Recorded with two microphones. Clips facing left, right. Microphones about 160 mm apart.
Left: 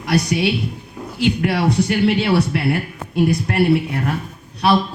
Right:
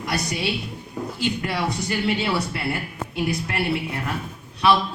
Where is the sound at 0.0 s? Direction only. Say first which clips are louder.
Left 8 dB; 60° left (ahead or behind).